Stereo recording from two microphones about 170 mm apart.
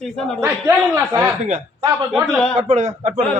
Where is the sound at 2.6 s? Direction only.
45° right (ahead or behind).